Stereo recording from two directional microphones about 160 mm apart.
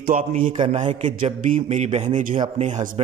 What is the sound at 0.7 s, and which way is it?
A man's voice, 45° right (ahead or behind).